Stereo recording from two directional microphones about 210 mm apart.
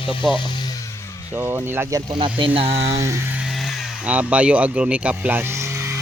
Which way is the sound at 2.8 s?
15° right (ahead or behind).